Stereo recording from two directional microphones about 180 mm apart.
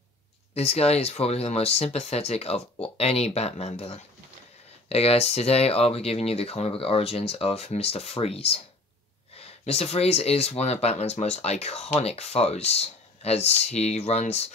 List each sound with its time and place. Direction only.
0.6 s speech: 35° left (ahead or behind)